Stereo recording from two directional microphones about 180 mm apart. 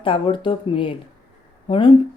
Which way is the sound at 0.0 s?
30° left (ahead or behind).